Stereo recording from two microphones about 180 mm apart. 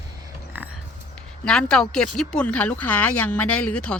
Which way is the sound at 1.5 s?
5° left (ahead or behind).